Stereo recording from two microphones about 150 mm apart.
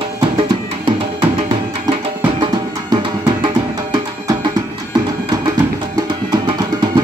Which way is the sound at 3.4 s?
30° right (ahead or behind).